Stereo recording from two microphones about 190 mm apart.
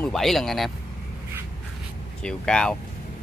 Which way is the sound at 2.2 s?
5° left (ahead or behind).